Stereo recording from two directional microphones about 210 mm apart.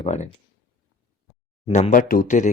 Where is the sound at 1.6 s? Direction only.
25° left (ahead or behind).